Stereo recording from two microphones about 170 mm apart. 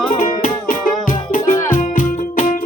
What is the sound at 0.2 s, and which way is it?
Music, 45° left (ahead or behind).